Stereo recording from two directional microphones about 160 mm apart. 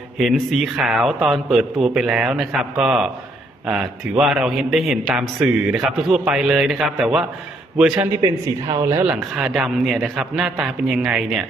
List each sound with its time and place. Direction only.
0.2 s a man's voice: centre (ahead or behind)
8.7 s speech: 20° right (ahead or behind)
9.2 s a man's voice: centre (ahead or behind)